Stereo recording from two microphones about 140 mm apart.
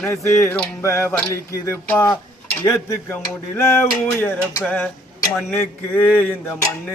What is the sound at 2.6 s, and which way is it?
Speech, 20° left (ahead or behind).